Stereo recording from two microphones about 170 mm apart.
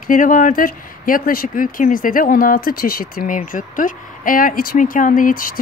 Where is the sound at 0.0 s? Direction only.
50° left (ahead or behind).